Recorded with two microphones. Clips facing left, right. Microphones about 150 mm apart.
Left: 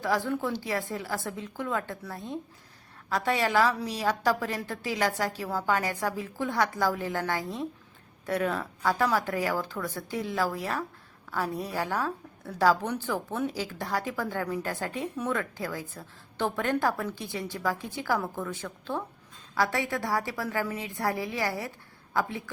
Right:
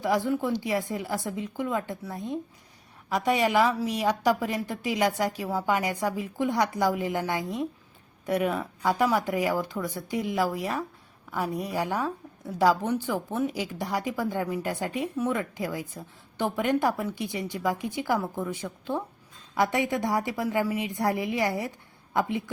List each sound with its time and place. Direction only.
0.0 s a woman's voice: 15° right (ahead or behind)